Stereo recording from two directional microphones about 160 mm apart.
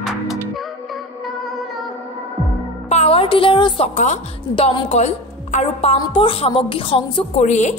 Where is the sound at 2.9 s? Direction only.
40° left (ahead or behind).